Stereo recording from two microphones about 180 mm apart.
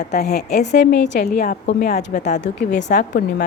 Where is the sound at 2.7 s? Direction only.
80° left.